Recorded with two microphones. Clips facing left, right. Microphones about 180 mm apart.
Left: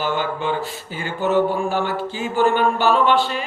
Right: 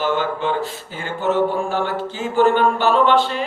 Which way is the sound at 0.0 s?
10° left (ahead or behind).